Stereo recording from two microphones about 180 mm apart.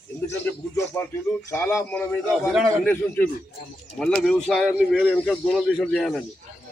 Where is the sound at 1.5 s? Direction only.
15° left (ahead or behind).